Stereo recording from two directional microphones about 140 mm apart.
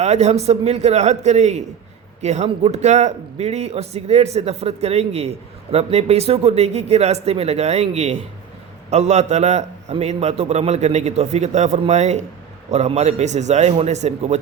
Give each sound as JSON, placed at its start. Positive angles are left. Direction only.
{"t": 0.0, "sound": "a man's voice", "side_deg": -50}